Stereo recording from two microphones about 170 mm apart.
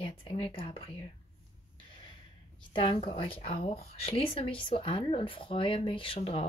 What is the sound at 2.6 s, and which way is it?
Speech, 30° left (ahead or behind).